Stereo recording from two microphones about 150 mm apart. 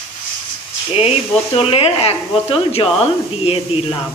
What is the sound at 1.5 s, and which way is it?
Speech, 40° left (ahead or behind).